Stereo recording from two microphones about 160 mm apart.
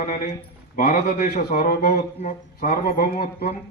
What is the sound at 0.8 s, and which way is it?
A man's voice, 60° left (ahead or behind).